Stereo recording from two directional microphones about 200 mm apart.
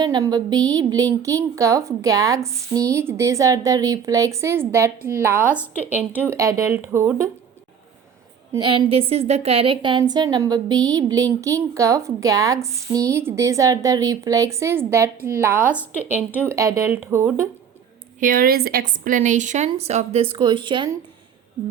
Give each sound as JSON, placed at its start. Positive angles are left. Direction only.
{"t": 0.0, "sound": "a woman's voice", "side_deg": -20}
{"t": 8.5, "sound": "a woman's voice", "side_deg": -25}
{"t": 18.2, "sound": "a woman's voice", "side_deg": -45}